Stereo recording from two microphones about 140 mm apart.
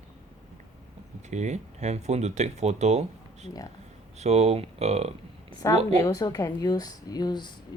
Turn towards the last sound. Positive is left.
turn(degrees=30)  # may be behind; listen again after turning